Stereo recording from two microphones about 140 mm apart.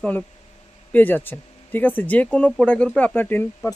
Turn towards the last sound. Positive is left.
turn(degrees=15)  # may be behind; listen again after turning